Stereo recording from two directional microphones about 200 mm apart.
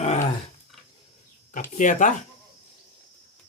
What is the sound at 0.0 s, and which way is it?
Roar, 35° left (ahead or behind).